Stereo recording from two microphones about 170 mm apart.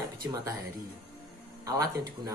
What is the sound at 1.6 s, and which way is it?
Speech, 20° right (ahead or behind).